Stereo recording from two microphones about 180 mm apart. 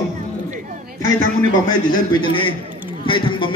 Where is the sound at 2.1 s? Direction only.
30° left (ahead or behind).